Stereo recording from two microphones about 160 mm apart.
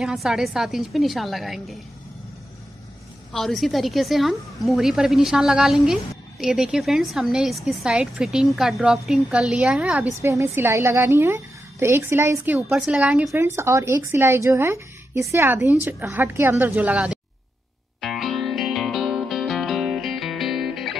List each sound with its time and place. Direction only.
0.0 s a woman's voice: centre (ahead or behind)
3.3 s a woman's voice: centre (ahead or behind)
10.2 s a woman's voice: 15° right (ahead or behind)
13.6 s a woman's voice: 15° right (ahead or behind)
18.0 s music: centre (ahead or behind)